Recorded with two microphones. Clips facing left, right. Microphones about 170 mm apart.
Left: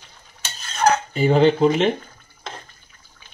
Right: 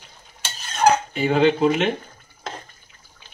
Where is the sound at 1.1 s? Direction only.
35° left (ahead or behind).